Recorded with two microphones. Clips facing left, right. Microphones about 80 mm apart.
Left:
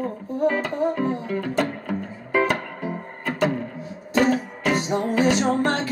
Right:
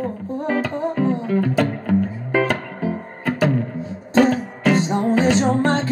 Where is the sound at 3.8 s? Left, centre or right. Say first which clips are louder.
Right 5 dB; right.